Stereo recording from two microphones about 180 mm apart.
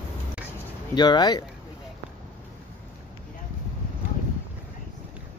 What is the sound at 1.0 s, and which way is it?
Speech, 25° left (ahead or behind).